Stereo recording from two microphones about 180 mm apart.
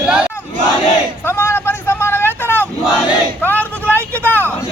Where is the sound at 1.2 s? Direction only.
10° left (ahead or behind).